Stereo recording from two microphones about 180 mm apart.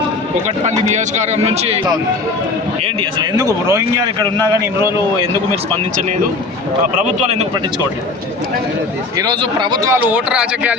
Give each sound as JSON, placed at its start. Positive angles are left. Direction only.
{"t": 0.6, "sound": "a man's voice", "side_deg": -40}
{"t": 3.0, "sound": "speech", "side_deg": -25}
{"t": 7.0, "sound": "a man's voice", "side_deg": -40}
{"t": 9.1, "sound": "speech", "side_deg": -25}
{"t": 10.1, "sound": "speech", "side_deg": -5}